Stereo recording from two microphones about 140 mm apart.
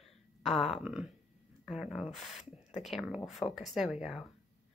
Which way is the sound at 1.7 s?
Centre (ahead or behind).